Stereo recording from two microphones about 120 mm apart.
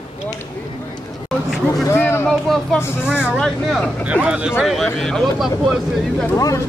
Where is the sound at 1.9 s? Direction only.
20° left (ahead or behind).